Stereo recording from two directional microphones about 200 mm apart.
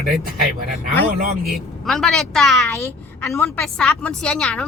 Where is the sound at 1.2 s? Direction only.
45° right (ahead or behind).